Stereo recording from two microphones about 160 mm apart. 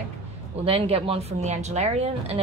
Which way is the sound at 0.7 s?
35° right (ahead or behind).